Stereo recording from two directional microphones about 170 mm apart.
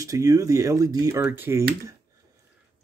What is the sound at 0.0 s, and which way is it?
Speech, 20° right (ahead or behind).